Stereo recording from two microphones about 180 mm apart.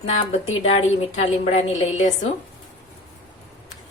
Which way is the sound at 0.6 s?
35° left (ahead or behind).